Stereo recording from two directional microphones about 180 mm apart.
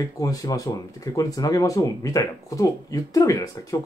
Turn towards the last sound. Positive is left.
turn(degrees=20)  # may be behind; listen again after turning